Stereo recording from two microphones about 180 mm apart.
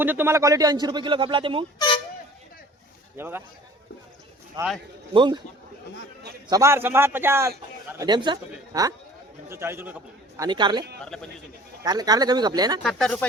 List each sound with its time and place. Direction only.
0.0 s a man's voice: 10° right (ahead or behind); by 1.6 s 30° right (ahead or behind)
3.2 s a man's voice: 10° right (ahead or behind)
4.6 s a man's voice: 25° right (ahead or behind)
6.5 s a man's voice: 15° right (ahead or behind)
11.0 s speech: 5° left (ahead or behind)
11.8 s a man's voice: 20° right (ahead or behind)
12.8 s speech: 5° left (ahead or behind)